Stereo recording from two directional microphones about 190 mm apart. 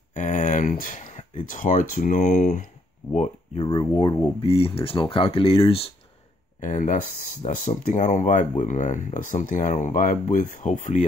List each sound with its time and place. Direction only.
0.1 s speech: 40° left (ahead or behind)
3.1 s speech: 35° left (ahead or behind)
3.6 s speech: 25° left (ahead or behind)
4.4 s speech: 30° left (ahead or behind)
6.6 s speech: 40° left (ahead or behind)